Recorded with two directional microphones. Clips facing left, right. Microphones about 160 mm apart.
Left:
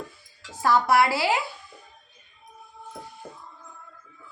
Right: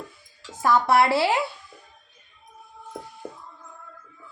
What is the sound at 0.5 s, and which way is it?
Speech, 20° right (ahead or behind).